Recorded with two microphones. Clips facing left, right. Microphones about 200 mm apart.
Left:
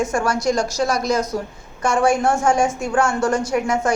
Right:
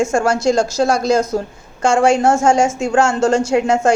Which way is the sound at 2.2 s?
25° right (ahead or behind).